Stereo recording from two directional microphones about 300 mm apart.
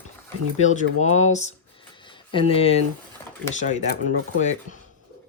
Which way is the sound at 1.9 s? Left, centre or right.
Centre.